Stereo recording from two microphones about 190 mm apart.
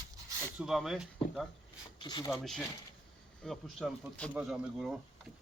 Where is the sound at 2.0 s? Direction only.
25° left (ahead or behind).